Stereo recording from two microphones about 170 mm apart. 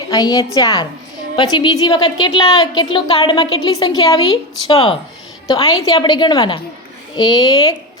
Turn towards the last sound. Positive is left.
turn(degrees=25)  # may be behind; listen again after turning